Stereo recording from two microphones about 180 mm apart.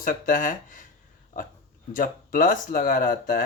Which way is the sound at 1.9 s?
50° left (ahead or behind).